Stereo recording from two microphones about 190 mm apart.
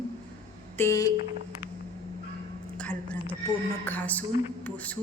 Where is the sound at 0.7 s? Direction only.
15° left (ahead or behind).